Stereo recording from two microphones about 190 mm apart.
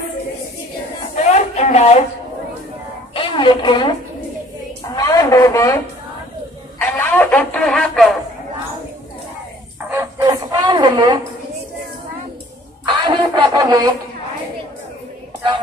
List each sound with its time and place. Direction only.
1.1 s a sound: 40° left (ahead or behind)
3.2 s speech: 25° left (ahead or behind)
4.9 s speech: 15° left (ahead or behind)
6.8 s speech: 10° left (ahead or behind)
9.8 s music: 10° right (ahead or behind)
12.8 s music: 25° right (ahead or behind)